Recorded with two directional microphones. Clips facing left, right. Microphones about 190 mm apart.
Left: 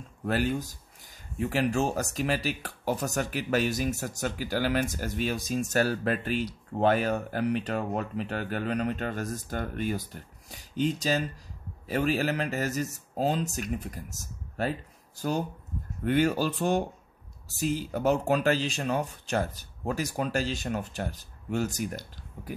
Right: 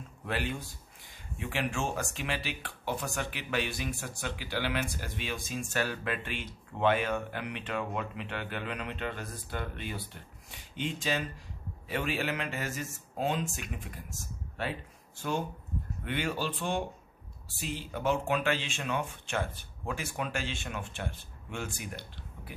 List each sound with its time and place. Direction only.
0.2 s speech: 40° left (ahead or behind)